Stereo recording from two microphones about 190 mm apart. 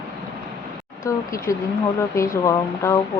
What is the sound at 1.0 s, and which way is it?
Speech, 15° left (ahead or behind).